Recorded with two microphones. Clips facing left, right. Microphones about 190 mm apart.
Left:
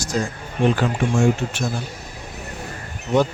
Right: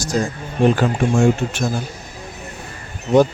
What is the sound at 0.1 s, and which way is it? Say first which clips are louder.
Speech: right 3 dB; 40° right (ahead or behind).